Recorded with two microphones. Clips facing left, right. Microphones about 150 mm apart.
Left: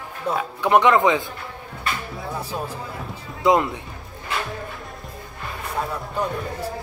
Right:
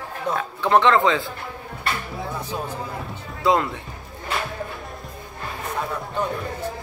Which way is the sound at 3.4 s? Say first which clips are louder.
Left 2 dB; 20° left (ahead or behind).